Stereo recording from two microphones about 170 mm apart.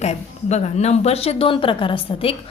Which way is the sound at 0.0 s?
40° left (ahead or behind).